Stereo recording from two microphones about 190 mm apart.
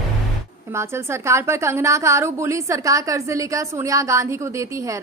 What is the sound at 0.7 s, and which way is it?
A woman's voice, 15° right (ahead or behind).